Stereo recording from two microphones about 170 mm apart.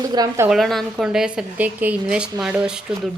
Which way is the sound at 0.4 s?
Centre (ahead or behind).